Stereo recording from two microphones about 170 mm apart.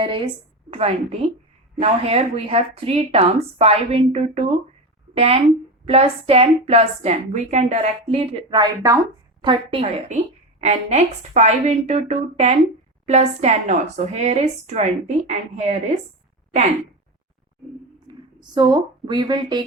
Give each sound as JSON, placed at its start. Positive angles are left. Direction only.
{"t": 0.0, "sound": "a woman's voice", "side_deg": -30}
{"t": 18.5, "sound": "speech", "side_deg": -25}